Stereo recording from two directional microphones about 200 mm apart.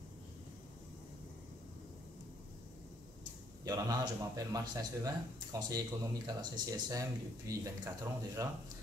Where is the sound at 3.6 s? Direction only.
20° right (ahead or behind).